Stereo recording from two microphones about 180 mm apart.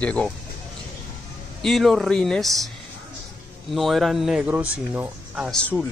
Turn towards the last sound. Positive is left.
turn(degrees=10)  # may be behind; listen again after turning